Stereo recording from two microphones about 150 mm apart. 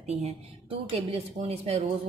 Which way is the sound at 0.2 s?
40° right (ahead or behind).